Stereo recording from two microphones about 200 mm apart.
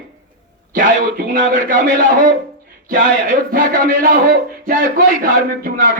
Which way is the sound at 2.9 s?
45° right (ahead or behind).